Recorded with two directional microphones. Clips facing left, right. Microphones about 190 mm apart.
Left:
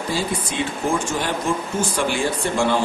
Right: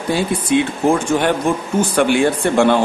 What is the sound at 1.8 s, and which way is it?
Speech, 60° right (ahead or behind).